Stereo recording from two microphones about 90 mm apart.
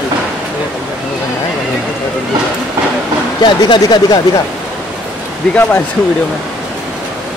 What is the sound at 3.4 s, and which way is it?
Speech, 55° left (ahead or behind).